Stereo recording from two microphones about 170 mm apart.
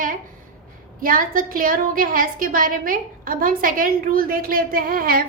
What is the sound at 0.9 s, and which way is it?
A woman's voice, 55° right (ahead or behind).